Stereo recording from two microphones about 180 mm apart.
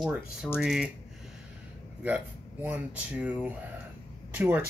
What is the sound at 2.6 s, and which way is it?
Speech, 10° right (ahead or behind).